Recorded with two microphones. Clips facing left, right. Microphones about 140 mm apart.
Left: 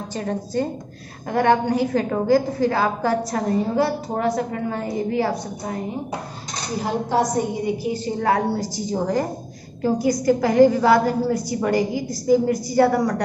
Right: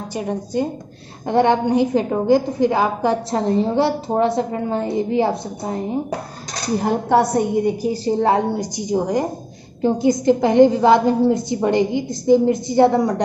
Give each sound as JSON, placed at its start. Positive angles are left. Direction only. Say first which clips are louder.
{"t": 0.1, "sound": "a woman's voice", "louder": "right 2 dB", "side_deg": -15}
{"t": 1.2, "sound": "a woman's voice", "louder": "right 2 dB", "side_deg": -25}
{"t": 6.8, "sound": "a woman's voice", "louder": "right 4 dB", "side_deg": -55}
{"t": 7.8, "sound": "a woman's voice", "louder": "right 5 dB", "side_deg": -35}
{"t": 8.5, "sound": "a woman's voice", "louder": "right 3 dB", "side_deg": -15}